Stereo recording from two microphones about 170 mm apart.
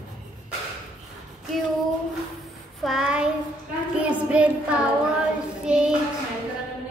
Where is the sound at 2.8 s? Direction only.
Centre (ahead or behind).